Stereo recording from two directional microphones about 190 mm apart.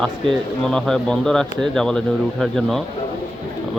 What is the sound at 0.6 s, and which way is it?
Speech, 5° left (ahead or behind).